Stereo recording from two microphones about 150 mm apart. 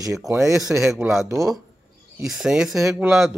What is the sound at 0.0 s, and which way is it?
Speech, 20° right (ahead or behind).